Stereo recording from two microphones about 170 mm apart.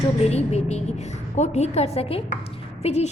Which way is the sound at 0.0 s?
40° left (ahead or behind).